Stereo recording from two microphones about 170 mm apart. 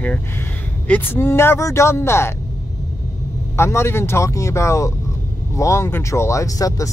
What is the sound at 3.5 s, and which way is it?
Speech, 15° left (ahead or behind).